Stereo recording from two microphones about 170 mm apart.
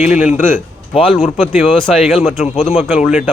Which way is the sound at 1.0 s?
Centre (ahead or behind).